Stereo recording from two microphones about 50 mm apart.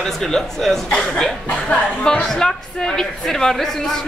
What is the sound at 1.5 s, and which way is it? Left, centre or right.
Speech, left.